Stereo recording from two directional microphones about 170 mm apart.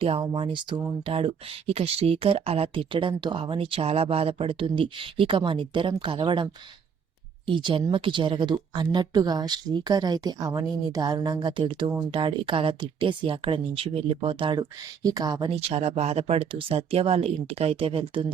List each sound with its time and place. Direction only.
0.2 s a woman's voice: 30° right (ahead or behind)